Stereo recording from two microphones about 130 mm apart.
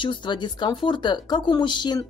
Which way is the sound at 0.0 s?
35° left (ahead or behind).